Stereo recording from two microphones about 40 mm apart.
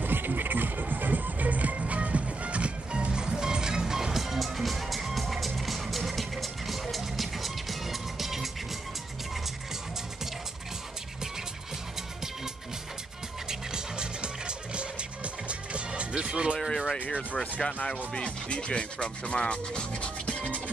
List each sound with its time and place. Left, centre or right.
0.0 s music: right; by 8.5 s centre
13.5 s music: centre
16.5 s a sound: centre
17.0 s speech: left
17.4 s speech: left